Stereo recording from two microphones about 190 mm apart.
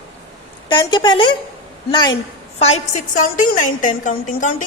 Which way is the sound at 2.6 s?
35° left (ahead or behind).